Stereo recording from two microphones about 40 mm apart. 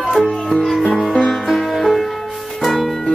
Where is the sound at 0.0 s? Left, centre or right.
Centre.